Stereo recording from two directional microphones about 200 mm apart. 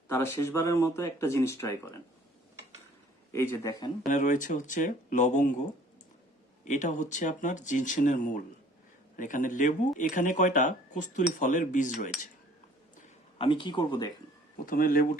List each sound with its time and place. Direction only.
0.1 s speech: 10° left (ahead or behind)
3.3 s speech: 10° left (ahead or behind)
4.0 s speech: 40° left (ahead or behind)
6.7 s speech: 40° left (ahead or behind)
13.4 s speech: 25° left (ahead or behind)
14.7 s speech: 45° left (ahead or behind)